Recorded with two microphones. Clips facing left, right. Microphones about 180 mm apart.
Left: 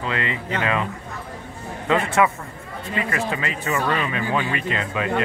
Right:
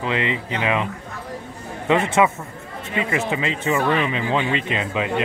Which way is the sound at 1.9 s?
20° right (ahead or behind).